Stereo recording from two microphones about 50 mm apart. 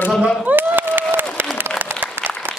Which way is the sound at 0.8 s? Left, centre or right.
Right.